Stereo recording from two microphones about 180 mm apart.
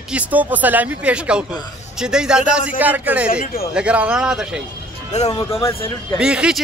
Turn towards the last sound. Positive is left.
turn(degrees=-5)  # may be behind; listen again after turning